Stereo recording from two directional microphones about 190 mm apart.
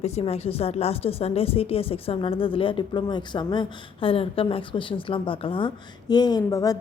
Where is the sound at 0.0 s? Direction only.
35° left (ahead or behind).